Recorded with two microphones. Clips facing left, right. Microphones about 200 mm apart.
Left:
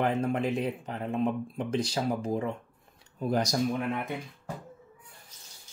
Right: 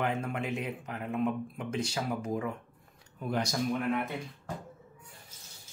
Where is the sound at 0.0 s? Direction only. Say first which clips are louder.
Left 5 dB; 35° left (ahead or behind).